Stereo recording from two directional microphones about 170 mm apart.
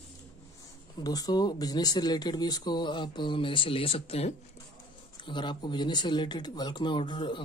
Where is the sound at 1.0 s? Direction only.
25° left (ahead or behind).